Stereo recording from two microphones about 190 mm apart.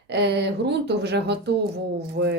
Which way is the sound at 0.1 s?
60° right (ahead or behind).